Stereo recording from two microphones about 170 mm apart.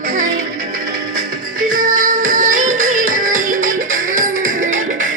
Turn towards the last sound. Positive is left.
turn(degrees=-50)  # may be behind; listen again after turning